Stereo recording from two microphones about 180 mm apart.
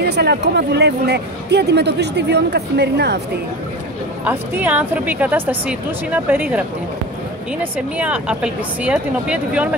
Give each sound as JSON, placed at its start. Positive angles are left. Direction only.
{"t": 0.0, "sound": "speech", "side_deg": -65}
{"t": 4.2, "sound": "speech", "side_deg": -10}
{"t": 7.7, "sound": "speech", "side_deg": -5}